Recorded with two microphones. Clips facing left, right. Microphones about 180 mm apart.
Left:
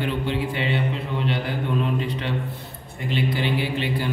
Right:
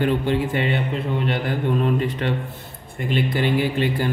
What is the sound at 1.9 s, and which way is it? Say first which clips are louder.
A man's voice: right 3 dB; 50° right (ahead or behind).